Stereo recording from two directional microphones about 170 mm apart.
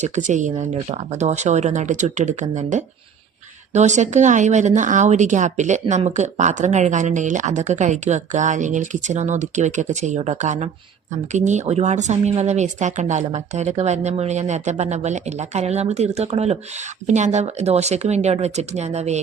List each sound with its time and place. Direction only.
0.0 s speech: 45° right (ahead or behind)